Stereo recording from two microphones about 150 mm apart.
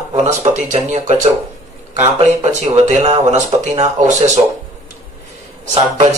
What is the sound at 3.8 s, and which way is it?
Speech, 50° right (ahead or behind).